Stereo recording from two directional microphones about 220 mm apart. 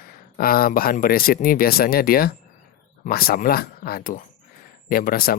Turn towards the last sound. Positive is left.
turn(degrees=40)  # may be behind; listen again after turning